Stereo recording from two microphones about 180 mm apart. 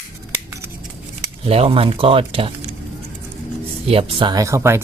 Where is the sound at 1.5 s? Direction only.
30° right (ahead or behind).